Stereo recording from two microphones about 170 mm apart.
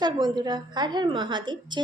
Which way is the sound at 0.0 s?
25° right (ahead or behind).